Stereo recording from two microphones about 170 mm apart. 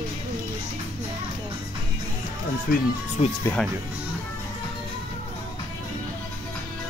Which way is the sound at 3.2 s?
40° left (ahead or behind).